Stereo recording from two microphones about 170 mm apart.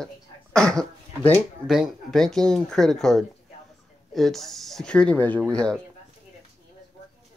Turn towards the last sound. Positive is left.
turn(degrees=5)  # may be behind; listen again after turning